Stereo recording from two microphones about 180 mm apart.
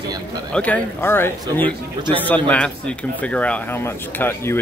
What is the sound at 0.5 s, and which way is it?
Speech, 10° left (ahead or behind).